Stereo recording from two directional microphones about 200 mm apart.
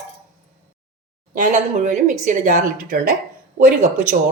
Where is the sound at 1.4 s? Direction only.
35° right (ahead or behind).